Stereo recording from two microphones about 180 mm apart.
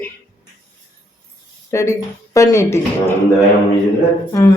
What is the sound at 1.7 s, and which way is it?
A woman's voice, 15° left (ahead or behind).